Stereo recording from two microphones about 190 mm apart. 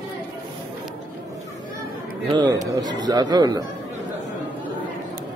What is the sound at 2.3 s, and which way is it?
Speech, 20° right (ahead or behind).